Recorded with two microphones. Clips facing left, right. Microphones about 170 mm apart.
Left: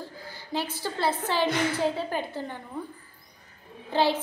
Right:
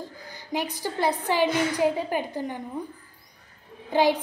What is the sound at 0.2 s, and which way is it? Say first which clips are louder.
A woman's voice: right 2 dB; 15° right (ahead or behind).